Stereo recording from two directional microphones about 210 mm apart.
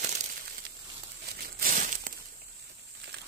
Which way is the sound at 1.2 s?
45° right (ahead or behind).